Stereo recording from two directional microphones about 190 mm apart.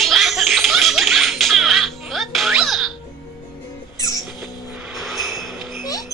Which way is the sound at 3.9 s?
20° left (ahead or behind).